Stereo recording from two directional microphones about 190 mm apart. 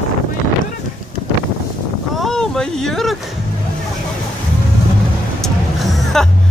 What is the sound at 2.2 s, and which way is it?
Vehicle, 5° left (ahead or behind).